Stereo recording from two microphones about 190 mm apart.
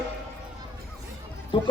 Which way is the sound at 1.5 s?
25° left (ahead or behind).